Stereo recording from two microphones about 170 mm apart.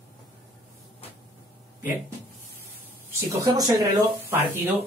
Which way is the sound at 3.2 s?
20° right (ahead or behind).